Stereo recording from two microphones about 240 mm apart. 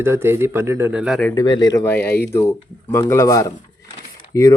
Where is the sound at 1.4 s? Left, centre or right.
Centre.